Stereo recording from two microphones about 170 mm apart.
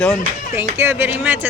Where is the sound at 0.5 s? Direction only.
15° right (ahead or behind).